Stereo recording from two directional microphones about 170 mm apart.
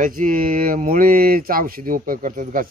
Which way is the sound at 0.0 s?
55° right (ahead or behind).